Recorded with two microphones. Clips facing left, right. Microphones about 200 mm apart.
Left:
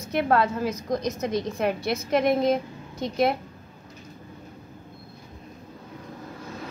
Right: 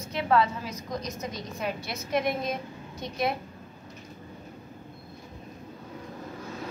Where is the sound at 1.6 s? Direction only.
60° left (ahead or behind).